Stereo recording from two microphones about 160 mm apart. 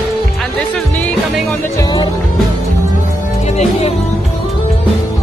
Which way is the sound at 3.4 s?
45° left (ahead or behind).